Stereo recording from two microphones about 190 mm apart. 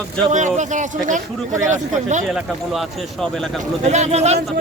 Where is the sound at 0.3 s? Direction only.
40° right (ahead or behind).